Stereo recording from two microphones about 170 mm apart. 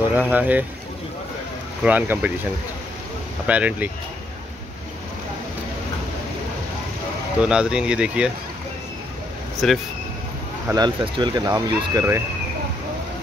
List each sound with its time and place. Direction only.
0.1 s speech: 10° right (ahead or behind)
1.9 s speech: 10° right (ahead or behind)
3.4 s speech: 10° right (ahead or behind)
7.4 s speech: 5° right (ahead or behind)
9.6 s speech: centre (ahead or behind)
10.7 s speech: 25° right (ahead or behind)